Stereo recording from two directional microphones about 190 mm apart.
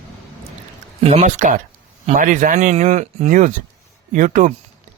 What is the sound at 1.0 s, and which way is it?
A man's voice, 35° right (ahead or behind).